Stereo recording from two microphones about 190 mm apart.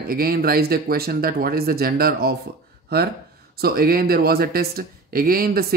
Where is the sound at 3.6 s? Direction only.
50° right (ahead or behind).